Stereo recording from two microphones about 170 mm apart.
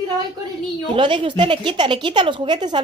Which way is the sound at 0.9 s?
30° right (ahead or behind).